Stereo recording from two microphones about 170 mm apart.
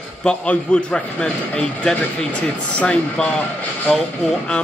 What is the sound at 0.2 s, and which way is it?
Speech, 5° left (ahead or behind).